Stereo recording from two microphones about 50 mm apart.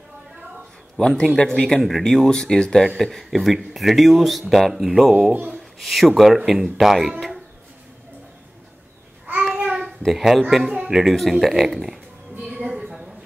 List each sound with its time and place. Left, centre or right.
0.9 s speech: centre
1.8 s speech: centre
2.0 s speech: centre
9.8 s a child's voice: centre
12.5 s a sound: centre